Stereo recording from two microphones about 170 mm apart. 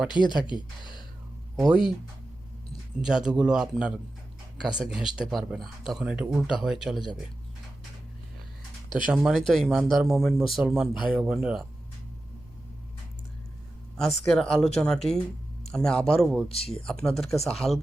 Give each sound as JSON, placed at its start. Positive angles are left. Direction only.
{"t": 0.1, "sound": "speech", "side_deg": 25}
{"t": 3.0, "sound": "speech", "side_deg": -5}
{"t": 9.0, "sound": "speech", "side_deg": -5}
{"t": 13.9, "sound": "speech", "side_deg": 0}
{"t": 16.5, "sound": "speech", "side_deg": 35}
{"t": 16.8, "sound": "speech", "side_deg": 5}